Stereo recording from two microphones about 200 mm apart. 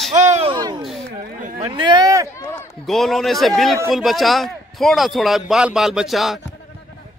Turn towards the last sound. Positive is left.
turn(degrees=0)  # may be behind; listen again after turning